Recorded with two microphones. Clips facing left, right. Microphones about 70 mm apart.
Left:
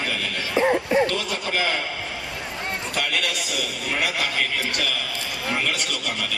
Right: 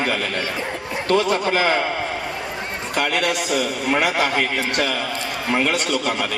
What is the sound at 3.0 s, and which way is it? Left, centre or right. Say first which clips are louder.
A man's voice: right 7 dB; right.